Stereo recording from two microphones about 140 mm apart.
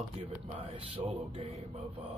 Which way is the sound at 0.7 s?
45° right (ahead or behind).